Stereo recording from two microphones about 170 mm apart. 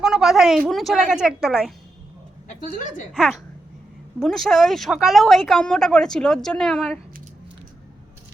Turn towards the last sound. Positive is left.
turn(degrees=0)  # may be behind; listen again after turning